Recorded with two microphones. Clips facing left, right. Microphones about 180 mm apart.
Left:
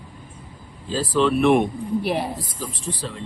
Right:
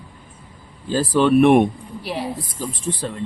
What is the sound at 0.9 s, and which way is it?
Speech, 55° right (ahead or behind).